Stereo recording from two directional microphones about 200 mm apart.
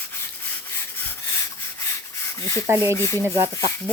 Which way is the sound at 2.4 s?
15° left (ahead or behind).